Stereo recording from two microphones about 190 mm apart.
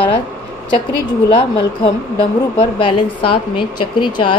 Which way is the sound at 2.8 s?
25° left (ahead or behind).